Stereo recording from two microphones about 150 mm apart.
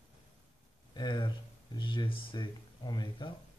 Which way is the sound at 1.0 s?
30° left (ahead or behind).